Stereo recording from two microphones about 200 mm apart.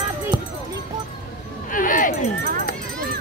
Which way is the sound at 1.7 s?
40° left (ahead or behind).